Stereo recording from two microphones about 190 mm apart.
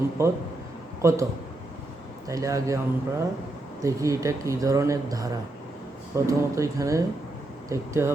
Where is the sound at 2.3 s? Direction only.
15° right (ahead or behind).